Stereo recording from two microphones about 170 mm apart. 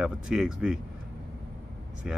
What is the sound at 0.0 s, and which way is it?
Speech, 5° right (ahead or behind).